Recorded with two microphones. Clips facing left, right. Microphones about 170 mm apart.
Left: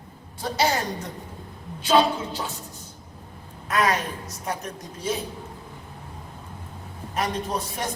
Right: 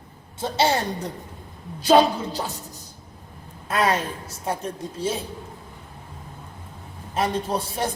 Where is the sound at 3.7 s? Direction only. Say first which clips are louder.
Right 1 dB; 30° right (ahead or behind).